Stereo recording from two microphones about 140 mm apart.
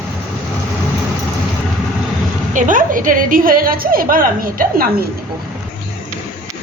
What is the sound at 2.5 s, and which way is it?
A woman's voice, 65° right (ahead or behind).